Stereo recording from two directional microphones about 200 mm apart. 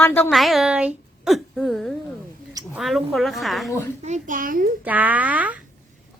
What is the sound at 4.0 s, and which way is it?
Speech, 40° right (ahead or behind).